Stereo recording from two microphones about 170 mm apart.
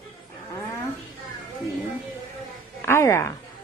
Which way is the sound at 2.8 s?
15° left (ahead or behind).